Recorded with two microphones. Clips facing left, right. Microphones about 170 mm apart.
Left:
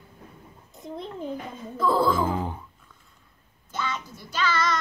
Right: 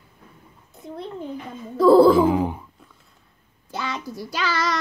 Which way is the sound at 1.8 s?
35° right (ahead or behind).